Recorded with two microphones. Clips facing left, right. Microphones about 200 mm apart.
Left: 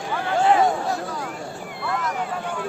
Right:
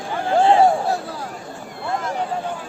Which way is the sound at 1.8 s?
30° right (ahead or behind).